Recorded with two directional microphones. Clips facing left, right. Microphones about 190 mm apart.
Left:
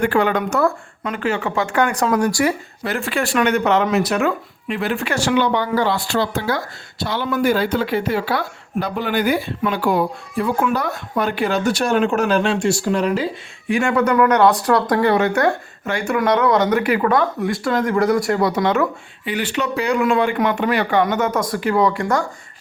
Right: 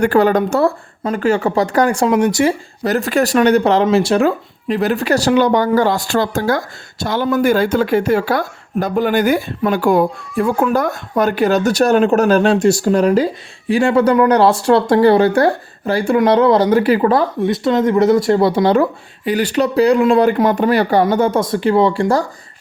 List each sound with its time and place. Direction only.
0.0 s speech: 40° right (ahead or behind)
2.8 s speech: 40° right (ahead or behind)